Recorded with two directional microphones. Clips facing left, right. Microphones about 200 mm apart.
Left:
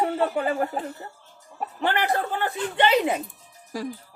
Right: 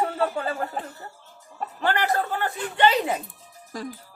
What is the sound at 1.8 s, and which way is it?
Speech, 20° left (ahead or behind).